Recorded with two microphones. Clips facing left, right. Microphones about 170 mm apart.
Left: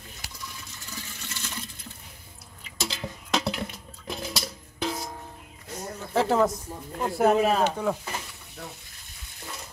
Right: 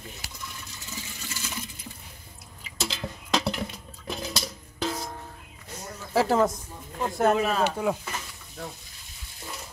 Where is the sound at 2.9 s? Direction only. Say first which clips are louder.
Right 1 dB; centre (ahead or behind).